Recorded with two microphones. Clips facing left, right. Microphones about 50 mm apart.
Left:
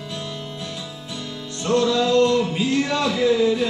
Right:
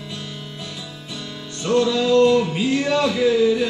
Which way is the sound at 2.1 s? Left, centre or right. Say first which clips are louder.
Right 2 dB; centre.